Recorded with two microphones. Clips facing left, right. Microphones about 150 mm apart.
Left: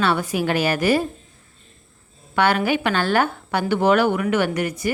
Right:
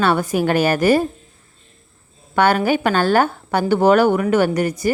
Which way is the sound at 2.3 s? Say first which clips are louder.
Right 3 dB; 40° right (ahead or behind).